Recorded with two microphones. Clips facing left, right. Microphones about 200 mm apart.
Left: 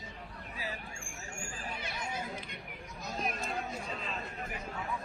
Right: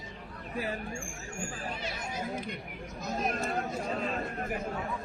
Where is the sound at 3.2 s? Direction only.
55° right (ahead or behind).